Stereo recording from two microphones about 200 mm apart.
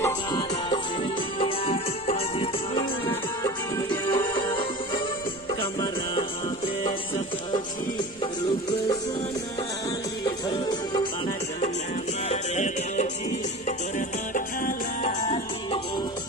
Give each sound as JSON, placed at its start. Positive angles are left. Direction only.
{"t": 0.0, "sound": "music", "side_deg": 20}
{"t": 10.5, "sound": "music", "side_deg": 25}
{"t": 12.3, "sound": "music", "side_deg": 35}
{"t": 15.2, "sound": "music", "side_deg": 30}